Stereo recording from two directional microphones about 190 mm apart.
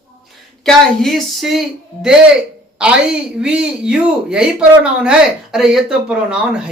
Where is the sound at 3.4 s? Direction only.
5° right (ahead or behind).